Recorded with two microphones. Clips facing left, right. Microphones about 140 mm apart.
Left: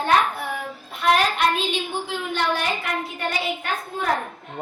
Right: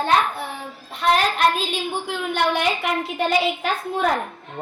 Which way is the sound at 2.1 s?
65° right (ahead or behind).